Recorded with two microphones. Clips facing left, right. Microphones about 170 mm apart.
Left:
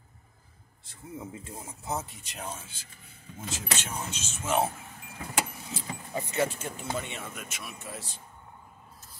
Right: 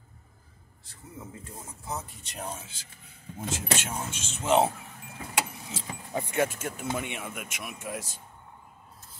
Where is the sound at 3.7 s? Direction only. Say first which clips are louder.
Right 1 dB; 50° right (ahead or behind).